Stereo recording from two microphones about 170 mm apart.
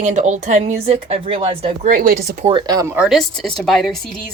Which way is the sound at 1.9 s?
55° right (ahead or behind).